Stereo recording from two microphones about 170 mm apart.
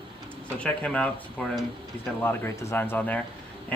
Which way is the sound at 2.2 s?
15° left (ahead or behind).